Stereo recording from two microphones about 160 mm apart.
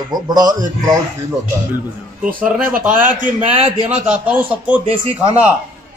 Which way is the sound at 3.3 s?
25° left (ahead or behind).